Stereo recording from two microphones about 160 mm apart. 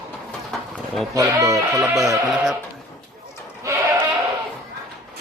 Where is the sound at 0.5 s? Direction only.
Centre (ahead or behind).